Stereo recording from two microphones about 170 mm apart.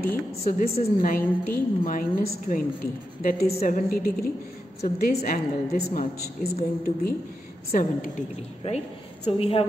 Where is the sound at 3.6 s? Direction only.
55° left (ahead or behind).